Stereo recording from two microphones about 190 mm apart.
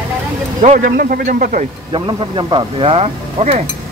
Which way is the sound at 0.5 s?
40° right (ahead or behind).